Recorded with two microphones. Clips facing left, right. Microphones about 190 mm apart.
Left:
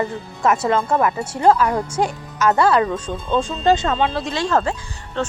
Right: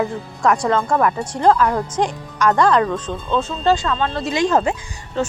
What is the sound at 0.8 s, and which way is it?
Speech, 25° left (ahead or behind).